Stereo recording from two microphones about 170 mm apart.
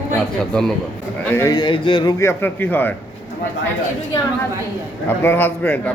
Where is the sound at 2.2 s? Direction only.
15° left (ahead or behind).